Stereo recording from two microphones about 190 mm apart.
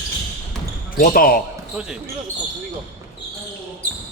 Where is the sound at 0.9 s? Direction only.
50° left (ahead or behind).